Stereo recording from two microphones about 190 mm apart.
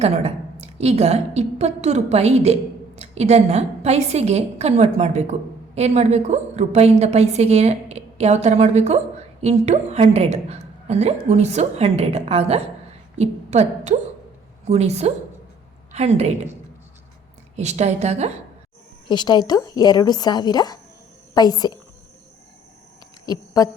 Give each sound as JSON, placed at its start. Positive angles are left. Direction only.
{"t": 0.0, "sound": "a woman's voice", "side_deg": -35}
{"t": 17.6, "sound": "a woman's voice", "side_deg": -35}
{"t": 19.0, "sound": "a woman's voice", "side_deg": 20}
{"t": 23.2, "sound": "speech", "side_deg": 20}